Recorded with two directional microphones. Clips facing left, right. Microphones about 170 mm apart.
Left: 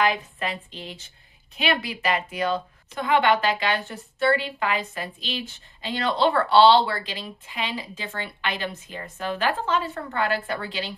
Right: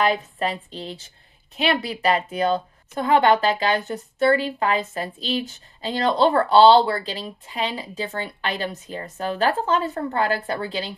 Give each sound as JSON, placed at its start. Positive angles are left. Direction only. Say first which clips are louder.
{"t": 0.0, "sound": "a woman's voice", "louder": "right 3 dB", "side_deg": -35}